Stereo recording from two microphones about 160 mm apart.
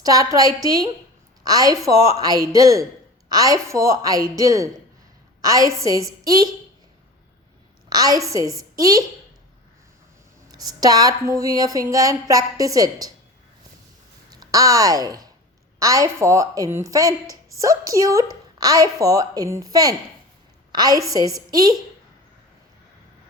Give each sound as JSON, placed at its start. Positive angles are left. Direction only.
{"t": 0.0, "sound": "a woman's voice", "side_deg": -20}
{"t": 7.9, "sound": "a woman's voice", "side_deg": -25}
{"t": 10.5, "sound": "a woman's voice", "side_deg": -25}
{"t": 14.3, "sound": "a woman's voice", "side_deg": -20}